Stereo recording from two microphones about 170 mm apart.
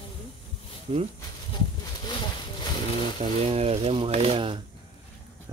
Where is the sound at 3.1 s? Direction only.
40° right (ahead or behind).